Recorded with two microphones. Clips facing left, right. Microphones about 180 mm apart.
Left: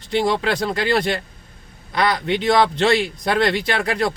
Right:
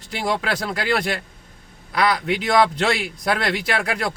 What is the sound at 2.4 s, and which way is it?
Speech, 25° left (ahead or behind).